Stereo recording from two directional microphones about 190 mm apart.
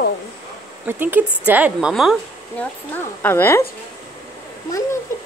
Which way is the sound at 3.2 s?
10° left (ahead or behind).